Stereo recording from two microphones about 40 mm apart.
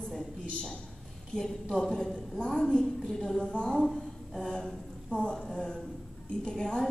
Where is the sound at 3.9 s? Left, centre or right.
Centre.